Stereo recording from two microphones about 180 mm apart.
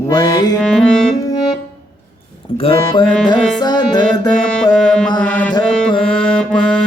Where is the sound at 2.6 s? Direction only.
30° left (ahead or behind).